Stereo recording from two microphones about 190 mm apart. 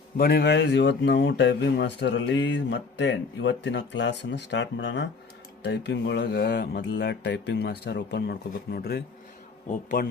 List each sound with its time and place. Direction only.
0.2 s speech: 60° left (ahead or behind)
9.6 s a man's voice: 45° left (ahead or behind)